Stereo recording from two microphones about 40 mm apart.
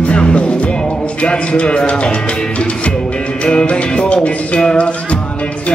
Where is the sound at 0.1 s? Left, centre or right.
Left.